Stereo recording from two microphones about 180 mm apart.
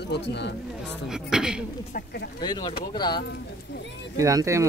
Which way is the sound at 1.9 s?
60° left (ahead or behind).